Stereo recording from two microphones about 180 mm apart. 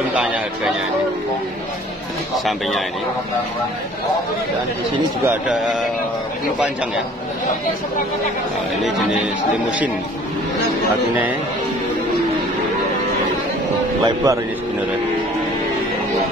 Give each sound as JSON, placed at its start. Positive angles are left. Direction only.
{"t": 0.1, "sound": "speech", "side_deg": -5}
{"t": 2.3, "sound": "speech", "side_deg": 0}
{"t": 14.0, "sound": "speech", "side_deg": -20}